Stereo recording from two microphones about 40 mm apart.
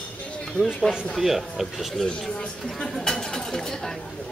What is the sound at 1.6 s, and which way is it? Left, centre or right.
Speech, centre.